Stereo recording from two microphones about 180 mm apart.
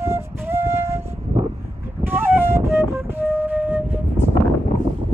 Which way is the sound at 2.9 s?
10° right (ahead or behind).